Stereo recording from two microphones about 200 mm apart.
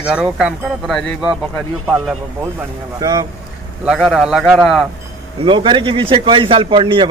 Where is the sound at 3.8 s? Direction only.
Centre (ahead or behind).